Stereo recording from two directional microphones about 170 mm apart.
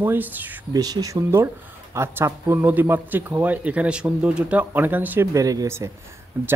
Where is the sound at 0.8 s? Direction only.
20° right (ahead or behind).